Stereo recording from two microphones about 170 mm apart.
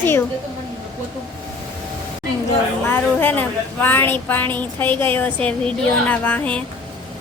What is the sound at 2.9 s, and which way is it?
A woman's voice, 10° left (ahead or behind).